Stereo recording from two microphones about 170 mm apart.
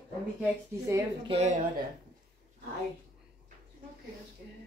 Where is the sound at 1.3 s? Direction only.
40° right (ahead or behind).